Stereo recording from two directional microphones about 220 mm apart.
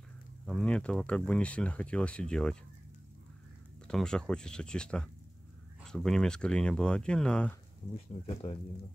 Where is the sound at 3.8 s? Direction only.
5° left (ahead or behind).